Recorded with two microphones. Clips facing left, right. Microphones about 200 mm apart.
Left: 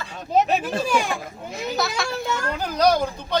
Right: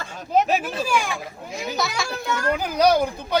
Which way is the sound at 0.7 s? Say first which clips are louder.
Left 2 dB; 50° left (ahead or behind).